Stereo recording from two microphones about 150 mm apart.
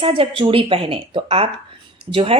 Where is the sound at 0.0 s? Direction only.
40° right (ahead or behind).